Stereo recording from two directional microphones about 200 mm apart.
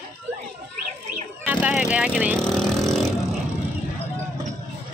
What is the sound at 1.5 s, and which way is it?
Vehicle, 5° right (ahead or behind).